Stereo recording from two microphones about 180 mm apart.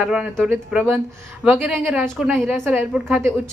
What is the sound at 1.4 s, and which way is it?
A woman's voice, centre (ahead or behind).